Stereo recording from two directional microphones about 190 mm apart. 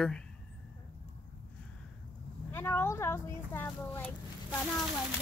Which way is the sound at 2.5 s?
10° left (ahead or behind).